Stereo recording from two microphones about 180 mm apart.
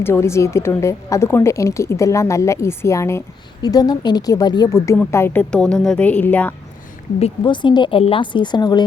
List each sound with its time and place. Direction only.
0.0 s a woman's voice: 15° left (ahead or behind)
7.2 s speech: 30° left (ahead or behind)